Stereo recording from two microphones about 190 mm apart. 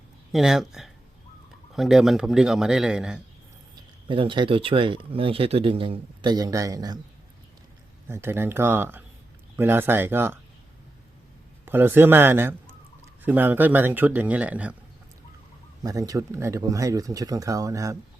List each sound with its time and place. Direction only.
0.3 s a man's voice: centre (ahead or behind)
4.1 s speech: 25° right (ahead or behind)
8.0 s speech: 15° right (ahead or behind)
11.6 s a man's voice: 10° right (ahead or behind)
15.8 s speech: 20° right (ahead or behind)